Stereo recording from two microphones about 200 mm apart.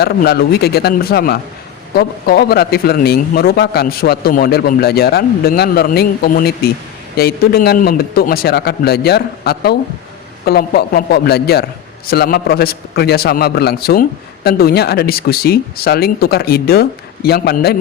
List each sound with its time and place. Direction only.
0.0 s a man's voice: 50° left (ahead or behind)